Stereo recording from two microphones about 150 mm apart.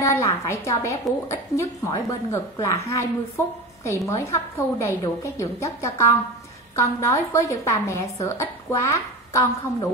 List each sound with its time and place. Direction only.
0.0 s a woman's voice: 20° left (ahead or behind)